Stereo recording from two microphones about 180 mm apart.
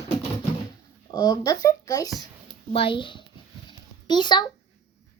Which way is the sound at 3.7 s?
25° left (ahead or behind).